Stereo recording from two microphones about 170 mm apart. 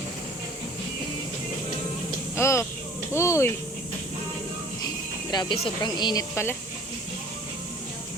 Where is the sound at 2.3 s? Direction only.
15° left (ahead or behind).